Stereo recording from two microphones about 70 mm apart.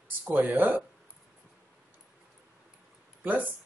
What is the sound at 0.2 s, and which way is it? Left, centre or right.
Speech, right.